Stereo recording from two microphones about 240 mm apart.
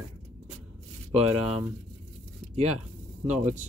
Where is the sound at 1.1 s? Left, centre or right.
Right.